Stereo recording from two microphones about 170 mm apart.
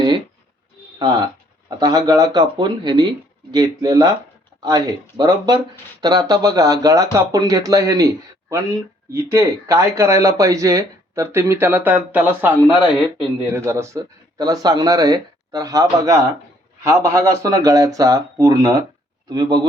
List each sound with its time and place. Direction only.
1.8 s speech: 20° right (ahead or behind)